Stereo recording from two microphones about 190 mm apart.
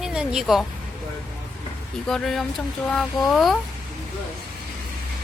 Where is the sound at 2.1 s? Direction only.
5° left (ahead or behind).